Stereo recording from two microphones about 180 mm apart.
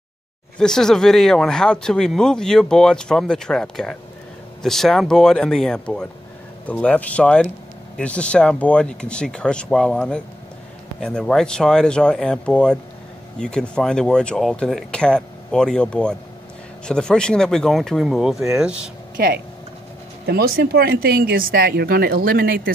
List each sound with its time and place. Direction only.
0.6 s speech: 5° left (ahead or behind)
19.1 s speech: 60° right (ahead or behind)